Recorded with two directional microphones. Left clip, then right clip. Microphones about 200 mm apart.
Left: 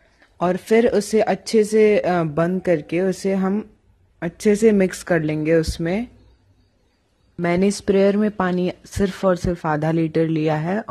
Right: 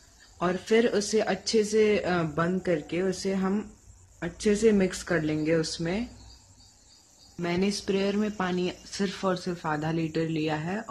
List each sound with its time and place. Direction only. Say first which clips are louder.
0.4 s speech: left 7 dB; 35° left (ahead or behind)
7.4 s speech: left 9 dB; 40° left (ahead or behind)